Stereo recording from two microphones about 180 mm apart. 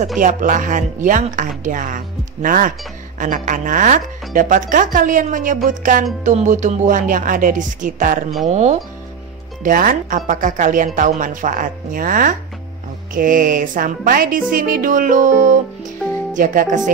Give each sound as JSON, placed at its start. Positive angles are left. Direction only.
{"t": 0.2, "sound": "speech", "side_deg": -50}
{"t": 9.6, "sound": "speech", "side_deg": -50}
{"t": 16.3, "sound": "speech", "side_deg": -45}